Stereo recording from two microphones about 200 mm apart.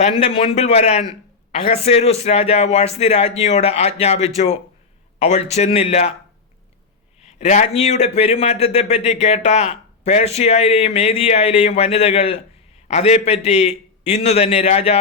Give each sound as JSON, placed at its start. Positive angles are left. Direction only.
{"t": 0.0, "sound": "a man's voice", "side_deg": 30}
{"t": 7.2, "sound": "a man's voice", "side_deg": 35}